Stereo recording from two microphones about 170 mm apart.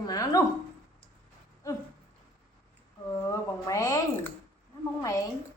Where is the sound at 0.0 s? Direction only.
20° left (ahead or behind).